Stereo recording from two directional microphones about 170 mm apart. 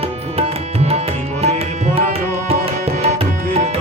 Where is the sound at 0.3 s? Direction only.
35° right (ahead or behind).